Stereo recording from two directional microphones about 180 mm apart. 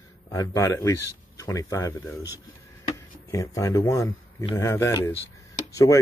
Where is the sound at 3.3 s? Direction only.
15° left (ahead or behind).